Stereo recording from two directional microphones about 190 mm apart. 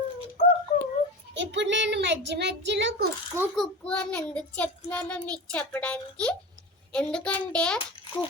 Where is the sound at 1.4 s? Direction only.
70° right (ahead or behind).